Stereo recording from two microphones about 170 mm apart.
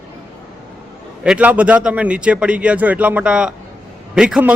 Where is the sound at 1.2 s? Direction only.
5° right (ahead or behind).